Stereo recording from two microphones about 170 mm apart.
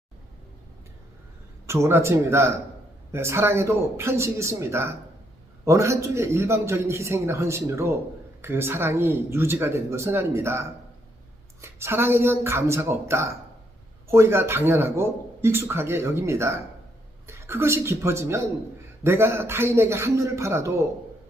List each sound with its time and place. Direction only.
1.6 s a man's voice: 15° right (ahead or behind)